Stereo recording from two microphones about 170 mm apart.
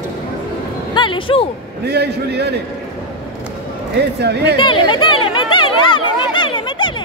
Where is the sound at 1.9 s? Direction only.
75° right (ahead or behind).